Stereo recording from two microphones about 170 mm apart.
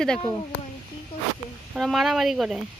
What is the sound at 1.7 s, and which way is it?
Speech, centre (ahead or behind).